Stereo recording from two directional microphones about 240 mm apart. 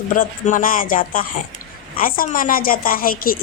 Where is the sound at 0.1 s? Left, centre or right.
Left.